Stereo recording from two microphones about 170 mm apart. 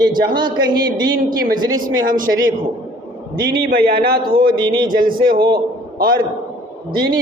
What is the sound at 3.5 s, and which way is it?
Speech, 60° right (ahead or behind).